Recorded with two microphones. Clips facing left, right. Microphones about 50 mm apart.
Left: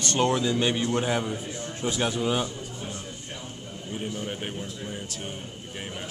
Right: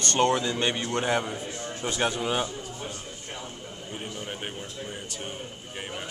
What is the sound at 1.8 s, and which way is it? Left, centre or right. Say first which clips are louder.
Speech: left 1 dB; centre.